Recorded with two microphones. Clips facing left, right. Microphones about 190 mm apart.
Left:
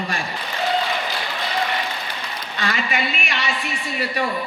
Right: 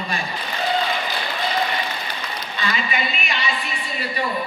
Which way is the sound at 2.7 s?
80° left.